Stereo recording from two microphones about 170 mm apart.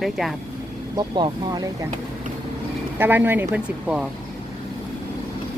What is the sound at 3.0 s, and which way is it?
Speech, 10° right (ahead or behind).